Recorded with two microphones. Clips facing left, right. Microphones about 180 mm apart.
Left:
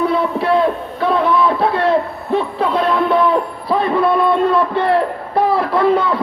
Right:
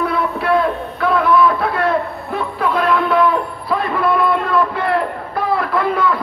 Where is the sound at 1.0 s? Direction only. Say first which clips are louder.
Right 1 dB; 30° left (ahead or behind).